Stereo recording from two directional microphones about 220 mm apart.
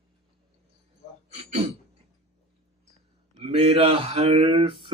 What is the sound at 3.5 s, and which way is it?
Mantra, 30° right (ahead or behind).